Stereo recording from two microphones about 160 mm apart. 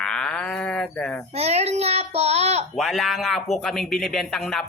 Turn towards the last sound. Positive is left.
turn(degrees=5)  # may be behind; listen again after turning